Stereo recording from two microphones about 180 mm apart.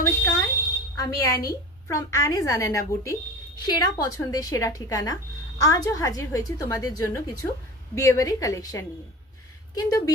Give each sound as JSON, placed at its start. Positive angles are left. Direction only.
{"t": 0.2, "sound": "smoke detector", "side_deg": 15}
{"t": 0.9, "sound": "a woman's voice", "side_deg": 20}